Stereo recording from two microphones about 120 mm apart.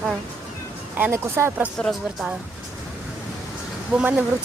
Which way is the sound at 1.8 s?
Centre (ahead or behind).